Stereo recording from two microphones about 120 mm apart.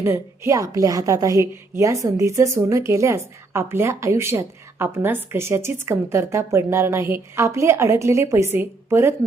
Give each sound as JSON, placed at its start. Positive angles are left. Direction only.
{"t": 0.0, "sound": "a woman's voice", "side_deg": -20}